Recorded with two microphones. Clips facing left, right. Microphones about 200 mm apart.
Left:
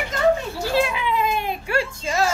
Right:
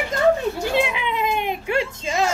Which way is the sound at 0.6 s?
20° right (ahead or behind).